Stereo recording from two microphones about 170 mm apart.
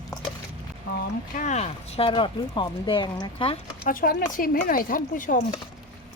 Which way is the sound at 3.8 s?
55° left (ahead or behind).